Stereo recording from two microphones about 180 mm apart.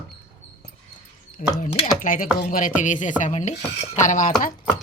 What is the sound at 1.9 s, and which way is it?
Speech, 50° left (ahead or behind).